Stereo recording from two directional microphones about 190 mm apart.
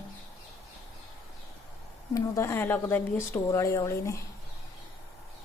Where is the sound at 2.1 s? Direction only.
15° left (ahead or behind).